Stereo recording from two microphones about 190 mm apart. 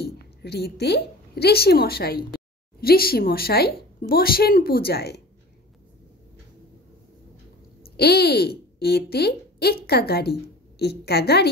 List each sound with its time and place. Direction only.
0.0 s a woman's voice: 60° left (ahead or behind)
7.8 s a woman's voice: 55° left (ahead or behind)